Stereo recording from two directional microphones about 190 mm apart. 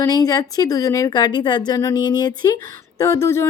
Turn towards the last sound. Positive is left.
turn(degrees=15)  # may be behind; listen again after turning